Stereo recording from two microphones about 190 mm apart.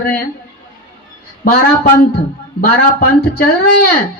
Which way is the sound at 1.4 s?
55° left (ahead or behind).